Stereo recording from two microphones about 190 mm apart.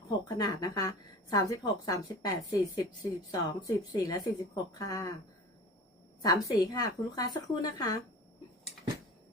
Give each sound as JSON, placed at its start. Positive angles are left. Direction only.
{"t": 0.3, "sound": "speech", "side_deg": 20}
{"t": 6.2, "sound": "speech", "side_deg": 20}